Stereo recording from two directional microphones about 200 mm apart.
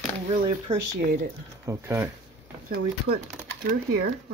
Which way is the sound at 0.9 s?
45° right (ahead or behind).